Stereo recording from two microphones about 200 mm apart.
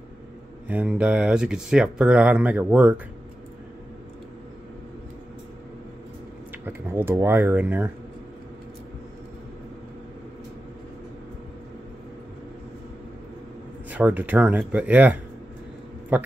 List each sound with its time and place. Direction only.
0.7 s speech: 5° right (ahead or behind)
6.6 s speech: 10° right (ahead or behind)
13.8 s speech: 5° right (ahead or behind)